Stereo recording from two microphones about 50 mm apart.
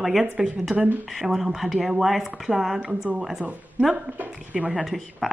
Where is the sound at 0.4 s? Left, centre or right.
Centre.